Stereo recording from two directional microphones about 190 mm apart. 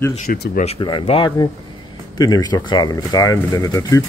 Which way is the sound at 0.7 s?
25° left (ahead or behind).